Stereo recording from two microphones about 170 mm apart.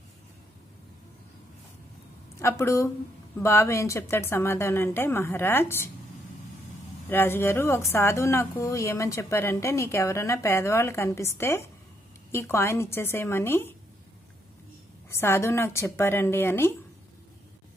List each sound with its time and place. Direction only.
2.4 s speech: 20° left (ahead or behind)
7.1 s speech: 10° left (ahead or behind)
15.0 s speech: 15° left (ahead or behind)